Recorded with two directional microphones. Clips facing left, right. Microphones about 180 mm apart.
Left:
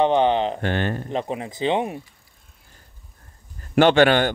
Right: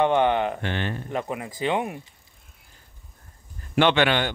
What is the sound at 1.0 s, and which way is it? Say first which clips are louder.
Speech: left 3 dB; 25° left (ahead or behind).